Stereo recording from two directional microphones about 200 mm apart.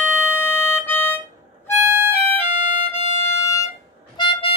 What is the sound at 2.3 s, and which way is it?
Music, 10° left (ahead or behind).